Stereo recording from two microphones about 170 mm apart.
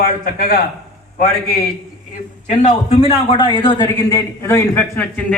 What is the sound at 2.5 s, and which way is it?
Speech, 45° left (ahead or behind).